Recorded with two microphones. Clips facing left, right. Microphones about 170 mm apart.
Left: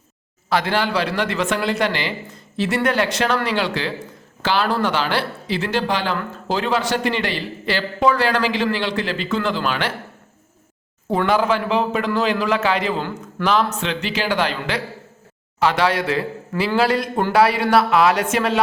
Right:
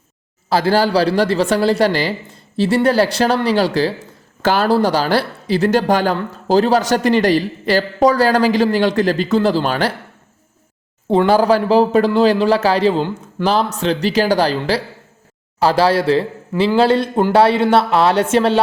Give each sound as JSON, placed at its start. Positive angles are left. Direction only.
{"t": 0.5, "sound": "a man's voice", "side_deg": -35}
{"t": 11.3, "sound": "a man's voice", "side_deg": -35}